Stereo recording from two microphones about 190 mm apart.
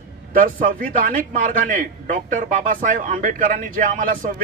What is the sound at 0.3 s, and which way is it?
A man's voice, 50° right (ahead or behind).